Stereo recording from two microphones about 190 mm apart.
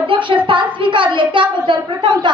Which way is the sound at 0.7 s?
25° right (ahead or behind).